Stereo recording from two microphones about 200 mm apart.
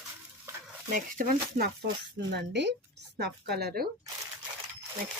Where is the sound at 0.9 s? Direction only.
40° right (ahead or behind).